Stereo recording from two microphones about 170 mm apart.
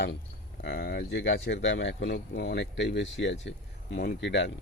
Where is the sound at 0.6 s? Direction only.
80° left.